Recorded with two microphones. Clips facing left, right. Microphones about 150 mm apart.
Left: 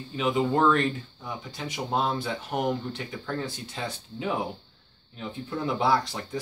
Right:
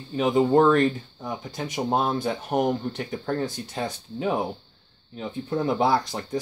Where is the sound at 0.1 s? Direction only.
40° right (ahead or behind).